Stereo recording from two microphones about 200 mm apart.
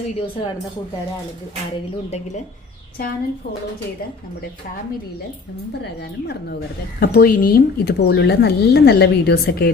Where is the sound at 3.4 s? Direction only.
50° left (ahead or behind).